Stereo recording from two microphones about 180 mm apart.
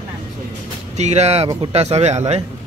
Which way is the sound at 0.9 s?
40° right (ahead or behind).